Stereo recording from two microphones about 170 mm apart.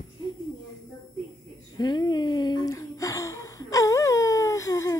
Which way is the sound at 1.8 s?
25° left (ahead or behind).